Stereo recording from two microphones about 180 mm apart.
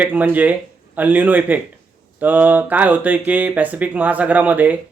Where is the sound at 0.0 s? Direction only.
10° right (ahead or behind).